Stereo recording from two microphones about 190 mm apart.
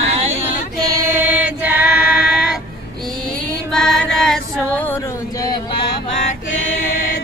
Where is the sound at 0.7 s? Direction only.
10° right (ahead or behind).